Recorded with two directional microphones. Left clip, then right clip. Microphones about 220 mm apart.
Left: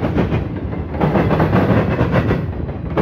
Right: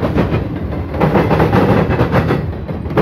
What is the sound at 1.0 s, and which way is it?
Train, 35° right (ahead or behind).